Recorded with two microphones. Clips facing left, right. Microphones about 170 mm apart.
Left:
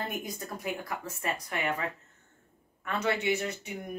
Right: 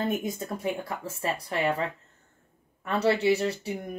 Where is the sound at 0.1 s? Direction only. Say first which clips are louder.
Right 7 dB; 25° right (ahead or behind).